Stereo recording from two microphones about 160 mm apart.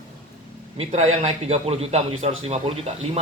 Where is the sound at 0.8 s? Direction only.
40° right (ahead or behind).